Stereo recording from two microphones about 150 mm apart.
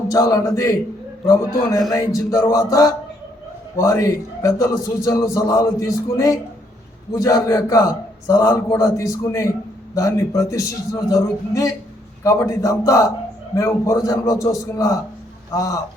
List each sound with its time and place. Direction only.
0.1 s a man's voice: 25° left (ahead or behind)
1.9 s a man's voice: 20° left (ahead or behind)